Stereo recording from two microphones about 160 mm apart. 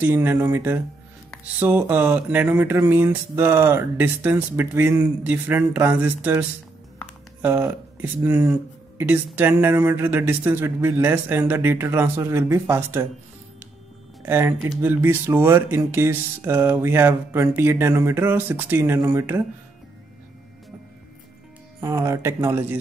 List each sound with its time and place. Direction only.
0.0 s speech: 15° right (ahead or behind)
7.4 s speech: 15° right (ahead or behind)
14.2 s speech: 15° right (ahead or behind)
21.7 s speech: 15° right (ahead or behind)